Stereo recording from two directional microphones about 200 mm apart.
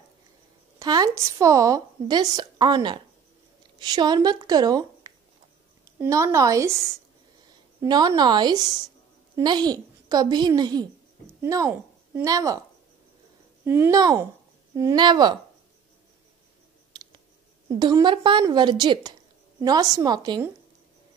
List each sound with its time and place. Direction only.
0.7 s a woman's voice: 20° right (ahead or behind)
7.8 s a woman's voice: 15° right (ahead or behind)
13.7 s a woman's voice: 15° right (ahead or behind)
16.9 s clicking: 25° right (ahead or behind)
17.6 s a woman's voice: 20° right (ahead or behind)